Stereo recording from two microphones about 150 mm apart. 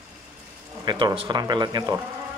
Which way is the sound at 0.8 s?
30° right (ahead or behind).